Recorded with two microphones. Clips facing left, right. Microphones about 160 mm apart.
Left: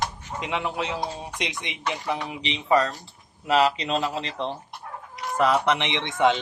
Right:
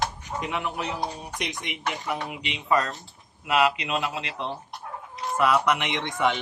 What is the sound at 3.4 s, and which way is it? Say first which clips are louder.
Speech: left 2 dB; 35° left (ahead or behind).